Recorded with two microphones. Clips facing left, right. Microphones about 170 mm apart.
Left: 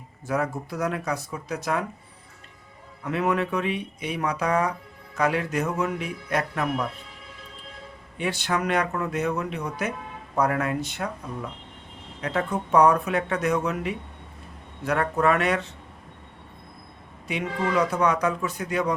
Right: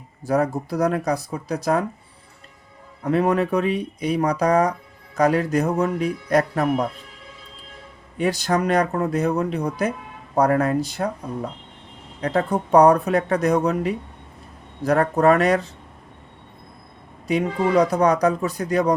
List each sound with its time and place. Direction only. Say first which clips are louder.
0.3 s speech: right 6 dB; 35° right (ahead or behind)
3.0 s speech: right 5 dB; 35° right (ahead or behind)
8.2 s speech: right 6 dB; 40° right (ahead or behind)
17.2 s speech: right 6 dB; 35° right (ahead or behind)